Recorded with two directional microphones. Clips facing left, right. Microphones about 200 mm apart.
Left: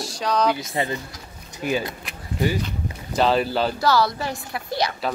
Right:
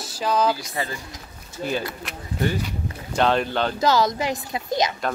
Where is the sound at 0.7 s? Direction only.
20° left (ahead or behind).